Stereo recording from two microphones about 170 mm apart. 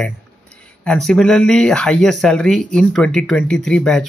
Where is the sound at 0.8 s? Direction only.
5° left (ahead or behind).